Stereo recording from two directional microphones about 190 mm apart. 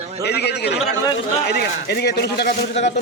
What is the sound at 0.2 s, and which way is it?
A man's voice, 60° left (ahead or behind).